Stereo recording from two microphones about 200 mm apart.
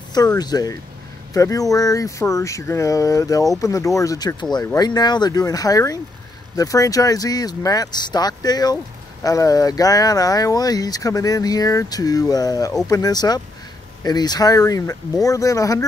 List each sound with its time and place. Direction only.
0.1 s speech: 20° left (ahead or behind)